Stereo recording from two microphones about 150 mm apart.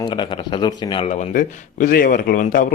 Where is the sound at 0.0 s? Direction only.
30° left (ahead or behind).